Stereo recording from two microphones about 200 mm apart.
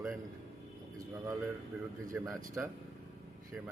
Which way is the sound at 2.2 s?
10° right (ahead or behind).